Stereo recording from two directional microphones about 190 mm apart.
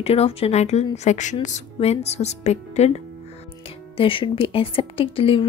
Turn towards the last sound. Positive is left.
turn(degrees=30)  # may be behind; listen again after turning